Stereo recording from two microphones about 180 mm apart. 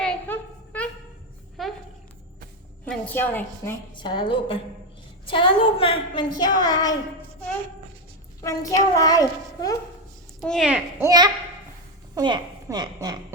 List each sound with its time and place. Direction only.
0.0 s a sound: 5° left (ahead or behind)
2.8 s a woman's voice: 10° left (ahead or behind)
3.9 s a woman's voice: 25° left (ahead or behind)
8.4 s a woman's voice: 20° left (ahead or behind)
10.4 s a woman's voice: centre (ahead or behind)
11.0 s a woman's voice: 20° right (ahead or behind)